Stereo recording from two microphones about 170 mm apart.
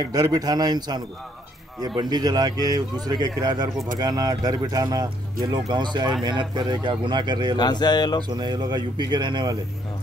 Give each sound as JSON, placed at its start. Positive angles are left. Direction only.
{"t": 0.0, "sound": "speech", "side_deg": -25}
{"t": 7.5, "sound": "speech", "side_deg": 25}
{"t": 8.3, "sound": "speech", "side_deg": -25}